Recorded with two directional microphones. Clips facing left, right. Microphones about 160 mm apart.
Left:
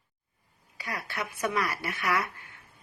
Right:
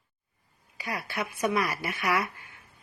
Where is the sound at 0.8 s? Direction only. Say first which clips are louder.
Right 2 dB; 10° right (ahead or behind).